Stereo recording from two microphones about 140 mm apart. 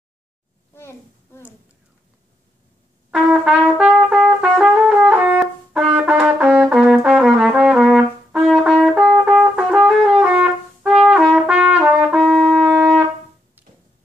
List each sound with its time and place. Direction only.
0.7 s a sound: 20° left (ahead or behind)
3.1 s trumpet: 5° right (ahead or behind)
13.6 s music: 10° right (ahead or behind)